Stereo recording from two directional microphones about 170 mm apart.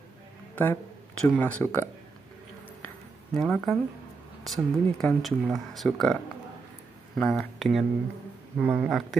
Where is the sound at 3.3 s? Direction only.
5° left (ahead or behind).